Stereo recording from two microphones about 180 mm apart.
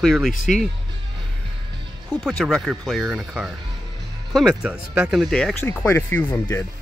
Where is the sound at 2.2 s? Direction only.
Centre (ahead or behind).